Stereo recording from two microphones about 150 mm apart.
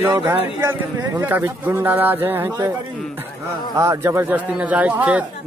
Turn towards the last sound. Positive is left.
turn(degrees=-10)  # may be behind; listen again after turning